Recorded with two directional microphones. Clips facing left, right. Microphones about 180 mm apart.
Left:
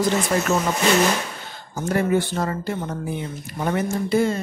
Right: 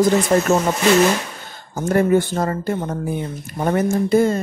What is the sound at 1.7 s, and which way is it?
Speech, 45° right (ahead or behind).